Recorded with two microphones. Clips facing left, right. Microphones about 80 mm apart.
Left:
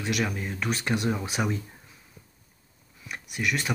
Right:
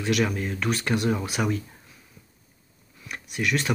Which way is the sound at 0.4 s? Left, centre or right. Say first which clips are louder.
Right 3 dB; centre.